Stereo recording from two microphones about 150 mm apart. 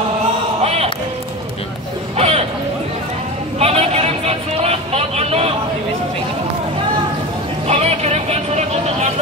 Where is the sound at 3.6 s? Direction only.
40° right (ahead or behind).